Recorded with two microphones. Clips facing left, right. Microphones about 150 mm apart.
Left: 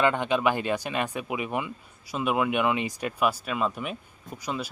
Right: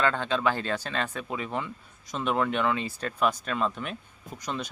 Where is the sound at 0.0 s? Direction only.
15° left (ahead or behind).